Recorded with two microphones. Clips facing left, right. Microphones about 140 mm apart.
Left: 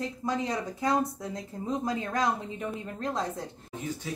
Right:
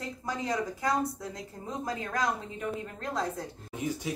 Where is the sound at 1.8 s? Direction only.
25° left (ahead or behind).